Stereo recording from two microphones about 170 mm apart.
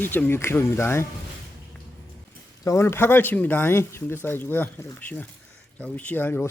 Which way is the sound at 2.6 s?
15° left (ahead or behind).